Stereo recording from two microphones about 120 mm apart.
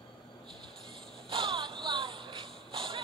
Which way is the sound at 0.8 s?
45° right (ahead or behind).